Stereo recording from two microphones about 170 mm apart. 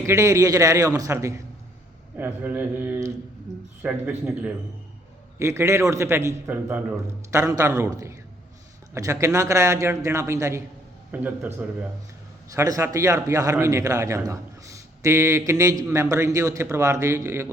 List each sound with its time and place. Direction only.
0.0 s a man's voice: 15° right (ahead or behind)